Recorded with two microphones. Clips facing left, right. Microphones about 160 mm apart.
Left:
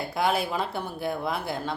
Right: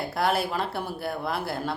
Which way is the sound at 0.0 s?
Centre (ahead or behind).